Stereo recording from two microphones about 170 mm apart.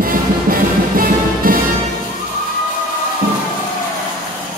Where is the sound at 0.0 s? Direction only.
55° right (ahead or behind).